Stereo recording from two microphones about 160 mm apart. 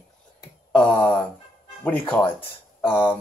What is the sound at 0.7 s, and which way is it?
Speech, 10° left (ahead or behind).